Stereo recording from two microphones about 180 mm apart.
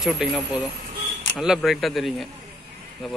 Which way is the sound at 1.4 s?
Centre (ahead or behind).